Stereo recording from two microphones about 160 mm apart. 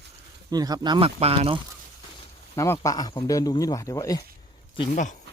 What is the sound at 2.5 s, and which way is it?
Speech, 20° left (ahead or behind).